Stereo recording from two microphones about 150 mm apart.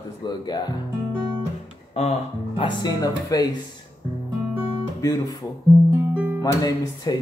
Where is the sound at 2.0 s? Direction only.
45° left (ahead or behind).